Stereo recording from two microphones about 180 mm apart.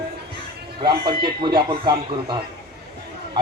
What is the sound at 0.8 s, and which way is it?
Speech, 25° right (ahead or behind).